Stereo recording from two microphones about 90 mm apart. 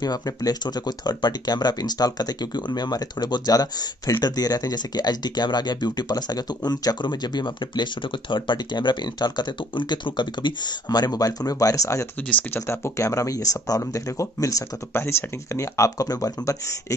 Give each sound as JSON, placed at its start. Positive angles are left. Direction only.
{"t": 0.0, "sound": "speech", "side_deg": 45}